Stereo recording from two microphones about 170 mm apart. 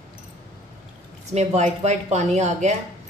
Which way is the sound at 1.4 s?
40° right (ahead or behind).